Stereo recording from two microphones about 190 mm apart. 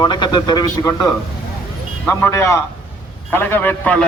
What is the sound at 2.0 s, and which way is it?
A man's voice, 15° left (ahead or behind).